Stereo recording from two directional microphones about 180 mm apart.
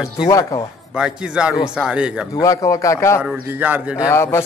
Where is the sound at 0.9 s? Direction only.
5° right (ahead or behind).